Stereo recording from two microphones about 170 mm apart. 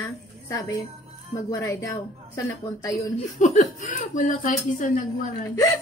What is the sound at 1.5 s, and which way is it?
Speech, 20° left (ahead or behind).